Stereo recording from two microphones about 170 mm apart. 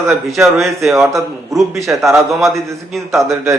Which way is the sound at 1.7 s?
20° right (ahead or behind).